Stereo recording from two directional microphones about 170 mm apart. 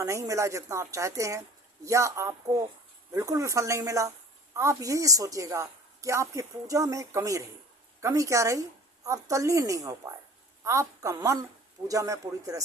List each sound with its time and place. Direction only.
0.0 s a woman's voice: 20° right (ahead or behind)